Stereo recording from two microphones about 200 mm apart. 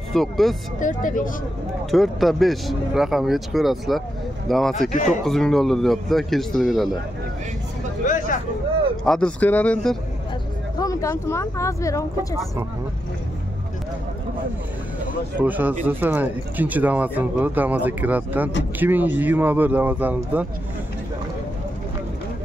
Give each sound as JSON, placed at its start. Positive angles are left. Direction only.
{"t": 0.1, "sound": "a man's voice", "side_deg": 0}
{"t": 0.7, "sound": "speech", "side_deg": 40}
{"t": 1.9, "sound": "a man's voice", "side_deg": 0}
{"t": 8.0, "sound": "speech", "side_deg": 40}
{"t": 9.0, "sound": "a man's voice", "side_deg": 5}
{"t": 15.4, "sound": "speech", "side_deg": -10}